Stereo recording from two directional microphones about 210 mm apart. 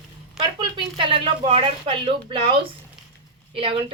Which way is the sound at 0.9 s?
25° right (ahead or behind).